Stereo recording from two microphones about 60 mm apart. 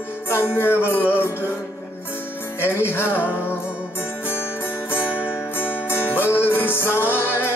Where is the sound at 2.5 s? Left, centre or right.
Left.